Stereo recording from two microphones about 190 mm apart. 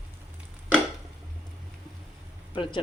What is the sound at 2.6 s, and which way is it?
Speech, 25° left (ahead or behind).